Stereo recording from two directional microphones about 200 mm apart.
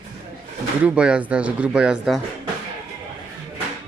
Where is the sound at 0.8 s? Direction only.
5° right (ahead or behind).